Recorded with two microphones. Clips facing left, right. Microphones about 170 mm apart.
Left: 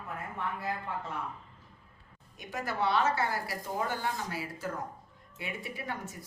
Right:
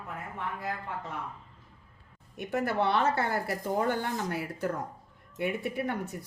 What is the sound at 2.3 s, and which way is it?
Speech, 60° right (ahead or behind).